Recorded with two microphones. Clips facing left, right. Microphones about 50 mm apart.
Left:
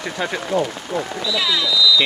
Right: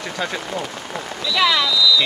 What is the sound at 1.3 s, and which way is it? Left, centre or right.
Speech, right.